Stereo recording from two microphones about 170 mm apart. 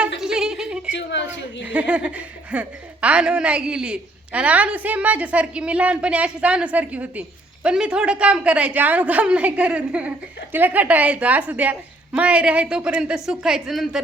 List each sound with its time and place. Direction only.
0.2 s a sound: 5° right (ahead or behind)
0.9 s a woman's voice: 90° left
1.6 s a woman's voice: 5° right (ahead or behind)